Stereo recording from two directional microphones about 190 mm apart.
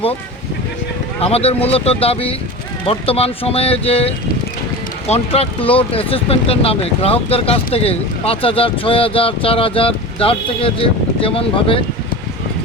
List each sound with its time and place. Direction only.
1.2 s speech: 30° left (ahead or behind)